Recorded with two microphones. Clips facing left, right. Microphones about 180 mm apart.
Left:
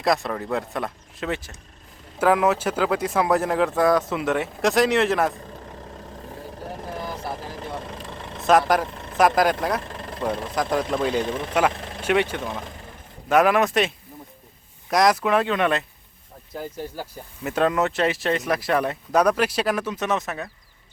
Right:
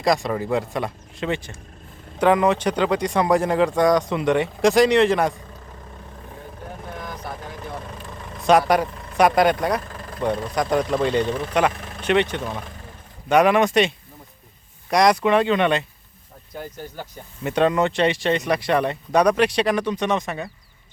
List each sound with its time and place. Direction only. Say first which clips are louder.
0.0 s speech: right 2 dB; centre (ahead or behind)
6.9 s vehicle: left 3 dB; 30° left (ahead or behind)
8.4 s speech: right 2 dB; centre (ahead or behind)